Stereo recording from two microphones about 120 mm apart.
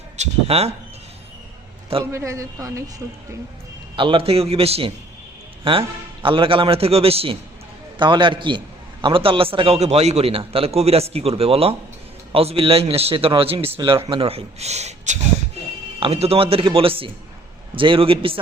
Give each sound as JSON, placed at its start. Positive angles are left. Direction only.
{"t": 0.2, "sound": "speech", "side_deg": -60}
{"t": 2.1, "sound": "a woman's voice", "side_deg": -25}
{"t": 3.9, "sound": "a man's voice", "side_deg": -45}
{"t": 7.9, "sound": "a man's voice", "side_deg": -40}
{"t": 16.0, "sound": "a man's voice", "side_deg": -55}